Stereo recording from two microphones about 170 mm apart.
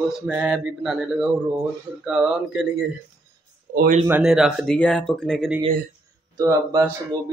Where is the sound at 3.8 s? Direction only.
50° right (ahead or behind).